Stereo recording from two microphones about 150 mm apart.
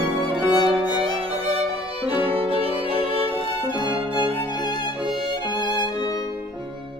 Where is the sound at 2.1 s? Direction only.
40° right (ahead or behind).